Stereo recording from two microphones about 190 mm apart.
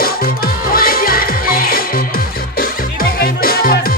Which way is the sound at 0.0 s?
50° left (ahead or behind).